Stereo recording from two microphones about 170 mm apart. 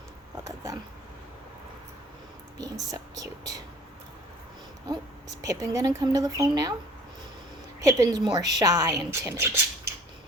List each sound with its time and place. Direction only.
2.6 s speech: 20° right (ahead or behind)
4.9 s speech: 20° right (ahead or behind)
7.8 s speech: 20° right (ahead or behind)